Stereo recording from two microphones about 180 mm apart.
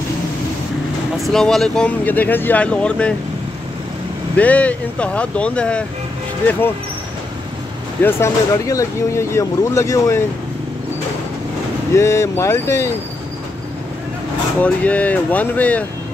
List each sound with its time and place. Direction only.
1.1 s speech: centre (ahead or behind)
4.4 s speech: 10° left (ahead or behind)
8.0 s speech: 15° left (ahead or behind)
11.9 s speech: 15° left (ahead or behind)
14.6 s speech: 10° left (ahead or behind)